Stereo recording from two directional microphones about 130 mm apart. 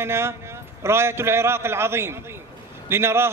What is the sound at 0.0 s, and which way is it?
A man's voice, 20° right (ahead or behind).